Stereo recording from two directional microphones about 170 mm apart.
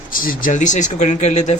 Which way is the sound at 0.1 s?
55° left (ahead or behind).